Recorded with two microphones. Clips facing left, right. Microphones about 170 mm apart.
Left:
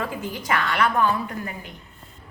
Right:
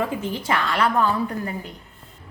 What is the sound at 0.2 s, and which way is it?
Speech, 30° right (ahead or behind).